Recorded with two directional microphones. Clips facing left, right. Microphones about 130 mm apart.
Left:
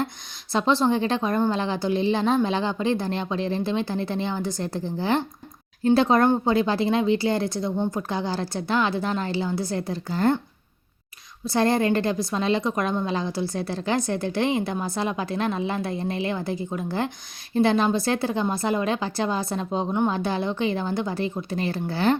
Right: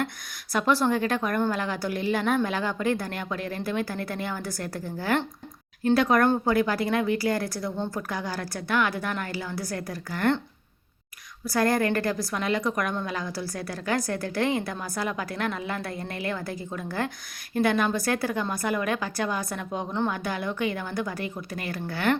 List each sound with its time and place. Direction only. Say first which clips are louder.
0.5 s a woman's voice: left 2 dB; 25° left (ahead or behind)
11.4 s a woman's voice: left 3 dB; 25° left (ahead or behind)